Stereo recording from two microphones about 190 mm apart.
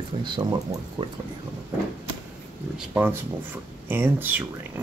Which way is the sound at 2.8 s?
10° right (ahead or behind).